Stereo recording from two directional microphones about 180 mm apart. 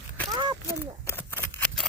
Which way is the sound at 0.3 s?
25° right (ahead or behind).